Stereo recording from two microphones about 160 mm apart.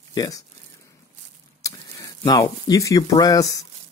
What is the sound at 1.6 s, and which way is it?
Speech, 25° left (ahead or behind).